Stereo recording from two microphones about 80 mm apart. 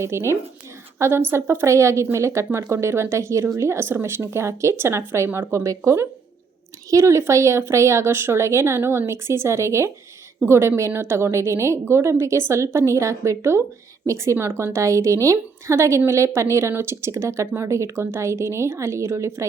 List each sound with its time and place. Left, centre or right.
0.0 s a woman's voice: right